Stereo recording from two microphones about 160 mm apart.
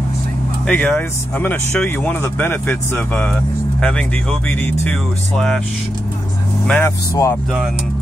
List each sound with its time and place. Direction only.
0.7 s speech: 10° left (ahead or behind)
6.7 s speech: 15° left (ahead or behind)